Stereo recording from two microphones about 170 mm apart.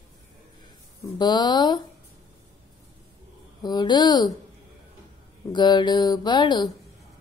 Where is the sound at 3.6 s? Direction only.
25° left (ahead or behind).